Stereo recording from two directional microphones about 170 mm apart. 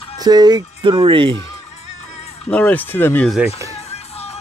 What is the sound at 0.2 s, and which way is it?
Speech, 25° right (ahead or behind).